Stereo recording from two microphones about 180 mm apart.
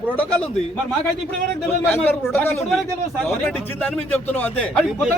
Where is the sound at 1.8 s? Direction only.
10° left (ahead or behind).